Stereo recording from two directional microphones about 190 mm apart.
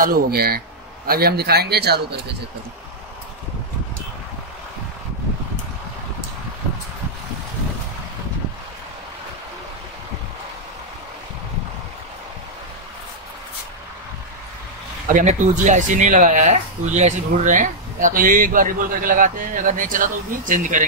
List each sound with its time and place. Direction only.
0.0 s speech: 50° right (ahead or behind)
15.1 s speech: 40° right (ahead or behind)